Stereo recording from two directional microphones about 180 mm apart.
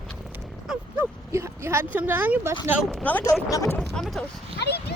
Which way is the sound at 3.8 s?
Centre (ahead or behind).